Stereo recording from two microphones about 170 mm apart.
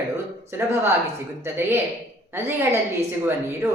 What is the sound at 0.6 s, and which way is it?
Speech, 15° right (ahead or behind).